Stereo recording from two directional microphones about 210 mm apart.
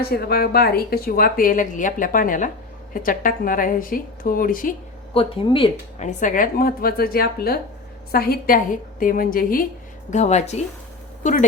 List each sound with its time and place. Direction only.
0.0 s a woman's voice: 50° left (ahead or behind)
5.1 s a woman's voice: 25° left (ahead or behind)